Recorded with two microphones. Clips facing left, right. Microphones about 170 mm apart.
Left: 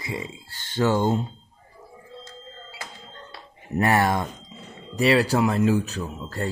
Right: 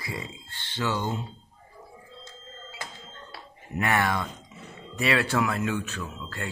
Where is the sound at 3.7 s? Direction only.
40° left (ahead or behind).